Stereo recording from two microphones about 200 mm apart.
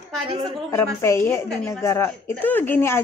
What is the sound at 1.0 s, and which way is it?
Speech, 15° left (ahead or behind).